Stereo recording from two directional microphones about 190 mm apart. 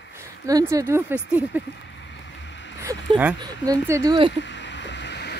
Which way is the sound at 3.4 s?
20° right (ahead or behind).